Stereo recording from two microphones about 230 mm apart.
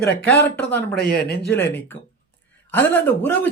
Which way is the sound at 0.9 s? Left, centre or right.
Left.